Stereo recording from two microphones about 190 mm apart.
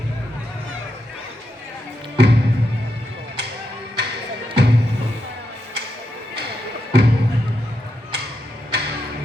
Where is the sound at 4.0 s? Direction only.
60° right (ahead or behind).